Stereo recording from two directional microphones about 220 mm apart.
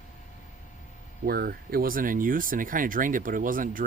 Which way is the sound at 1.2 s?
45° right (ahead or behind).